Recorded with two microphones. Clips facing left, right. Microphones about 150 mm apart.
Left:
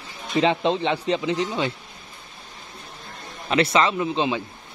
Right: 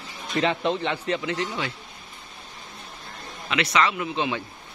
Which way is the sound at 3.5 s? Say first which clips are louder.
Left 4 dB; 30° left (ahead or behind).